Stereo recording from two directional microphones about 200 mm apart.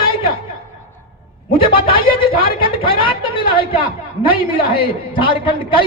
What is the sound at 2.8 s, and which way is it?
A man's voice, 25° left (ahead or behind).